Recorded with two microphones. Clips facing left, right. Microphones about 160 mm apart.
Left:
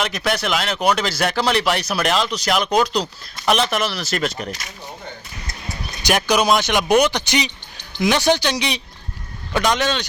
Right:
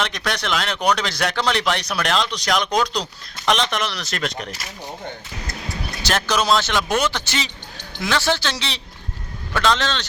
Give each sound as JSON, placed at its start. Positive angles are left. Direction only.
{"t": 0.0, "sound": "speech", "side_deg": 5}
{"t": 6.0, "sound": "speech", "side_deg": 15}